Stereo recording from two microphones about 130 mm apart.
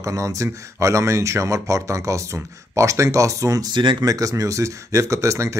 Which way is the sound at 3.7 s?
35° right (ahead or behind).